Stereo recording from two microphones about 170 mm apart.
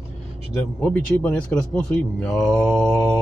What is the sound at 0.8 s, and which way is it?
A man's voice, 10° left (ahead or behind).